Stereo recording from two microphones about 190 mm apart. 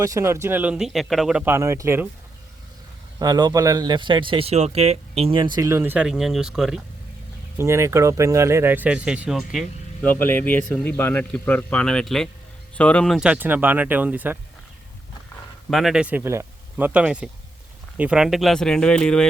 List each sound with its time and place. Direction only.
0.0 s speech: 15° right (ahead or behind)
3.2 s speech: 20° right (ahead or behind); by 6.8 s centre (ahead or behind)
7.6 s speech: 15° right (ahead or behind)
10.0 s a man's voice: 10° left (ahead or behind); by 14.3 s 10° right (ahead or behind)
15.7 s speech: centre (ahead or behind)